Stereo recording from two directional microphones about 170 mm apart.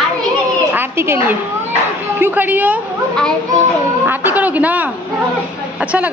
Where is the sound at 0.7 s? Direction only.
15° right (ahead or behind).